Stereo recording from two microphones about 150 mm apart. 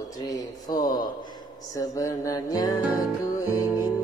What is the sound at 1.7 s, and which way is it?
Music, 25° left (ahead or behind).